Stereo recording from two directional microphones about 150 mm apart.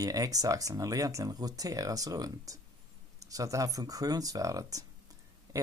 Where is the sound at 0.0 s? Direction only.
25° right (ahead or behind).